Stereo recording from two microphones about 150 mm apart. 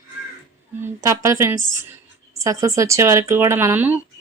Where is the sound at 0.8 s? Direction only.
20° right (ahead or behind).